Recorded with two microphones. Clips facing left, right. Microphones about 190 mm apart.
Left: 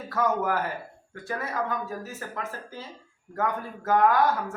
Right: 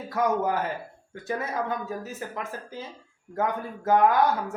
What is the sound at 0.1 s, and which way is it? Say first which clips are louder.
Speech: right 1 dB; 15° right (ahead or behind).